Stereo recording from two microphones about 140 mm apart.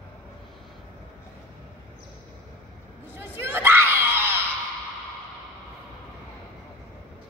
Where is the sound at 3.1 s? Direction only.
15° right (ahead or behind).